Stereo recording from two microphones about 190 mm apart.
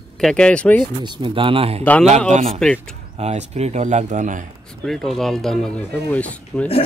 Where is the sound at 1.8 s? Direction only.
10° left (ahead or behind).